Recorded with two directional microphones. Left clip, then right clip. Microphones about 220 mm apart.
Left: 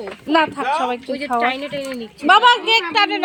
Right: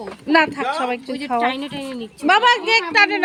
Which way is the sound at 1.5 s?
60° right (ahead or behind).